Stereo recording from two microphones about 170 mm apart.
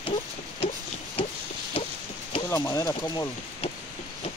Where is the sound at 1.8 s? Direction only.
30° left (ahead or behind).